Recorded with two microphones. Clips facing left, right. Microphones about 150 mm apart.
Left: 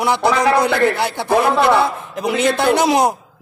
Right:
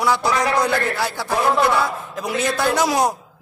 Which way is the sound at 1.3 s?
60° left (ahead or behind).